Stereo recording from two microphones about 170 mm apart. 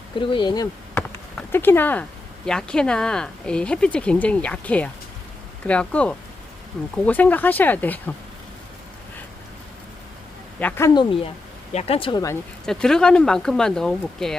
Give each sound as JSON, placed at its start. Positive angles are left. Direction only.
{"t": 0.2, "sound": "speech", "side_deg": 30}
{"t": 0.9, "sound": "speech", "side_deg": 10}
{"t": 10.6, "sound": "speech", "side_deg": 10}
{"t": 10.9, "sound": "speech", "side_deg": 30}
{"t": 12.6, "sound": "speech", "side_deg": 5}